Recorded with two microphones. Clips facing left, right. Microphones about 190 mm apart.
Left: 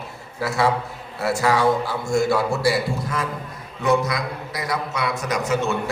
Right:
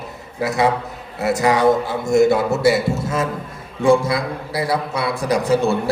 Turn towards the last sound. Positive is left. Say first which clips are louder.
# right 5 dB
turn(degrees=-35)  # may be behind; listen again after turning